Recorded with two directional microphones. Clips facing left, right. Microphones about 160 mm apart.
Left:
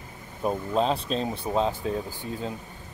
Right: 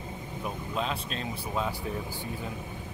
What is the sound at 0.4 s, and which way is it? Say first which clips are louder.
Speech: left 9 dB; 35° left (ahead or behind).